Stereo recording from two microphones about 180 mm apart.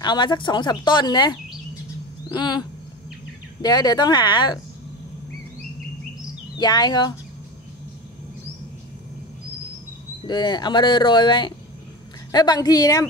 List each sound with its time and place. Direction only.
0.0 s speech: 25° left (ahead or behind)
2.3 s speech: 25° left (ahead or behind)
3.6 s speech: 20° left (ahead or behind)
6.6 s speech: 25° left (ahead or behind)
10.2 s speech: 25° left (ahead or behind)